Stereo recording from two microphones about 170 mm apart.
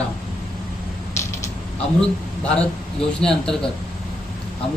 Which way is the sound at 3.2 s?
5° left (ahead or behind).